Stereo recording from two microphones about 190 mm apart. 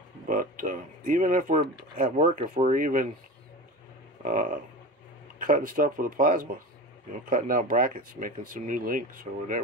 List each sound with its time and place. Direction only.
0.3 s speech: 45° right (ahead or behind)
4.2 s speech: 45° right (ahead or behind)